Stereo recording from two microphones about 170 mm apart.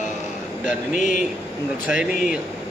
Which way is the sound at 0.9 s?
50° left (ahead or behind).